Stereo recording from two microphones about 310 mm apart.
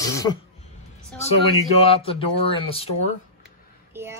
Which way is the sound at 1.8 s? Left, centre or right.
Centre.